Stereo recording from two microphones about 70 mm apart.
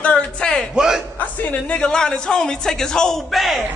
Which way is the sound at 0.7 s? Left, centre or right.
Centre.